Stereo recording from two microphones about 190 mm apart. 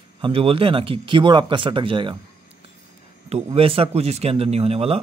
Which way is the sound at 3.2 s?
30° right (ahead or behind).